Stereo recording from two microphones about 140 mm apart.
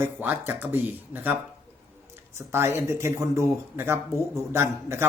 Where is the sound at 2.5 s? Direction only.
20° right (ahead or behind).